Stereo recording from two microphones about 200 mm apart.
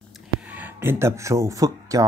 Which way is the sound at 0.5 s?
10° right (ahead or behind).